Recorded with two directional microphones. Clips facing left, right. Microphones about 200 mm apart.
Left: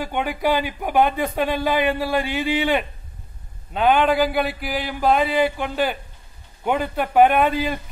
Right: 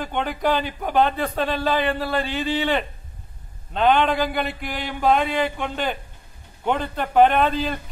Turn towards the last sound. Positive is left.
turn(degrees=10)  # may be behind; listen again after turning